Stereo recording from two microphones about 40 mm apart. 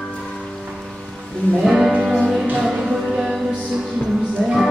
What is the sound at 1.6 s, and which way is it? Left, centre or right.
Music, centre.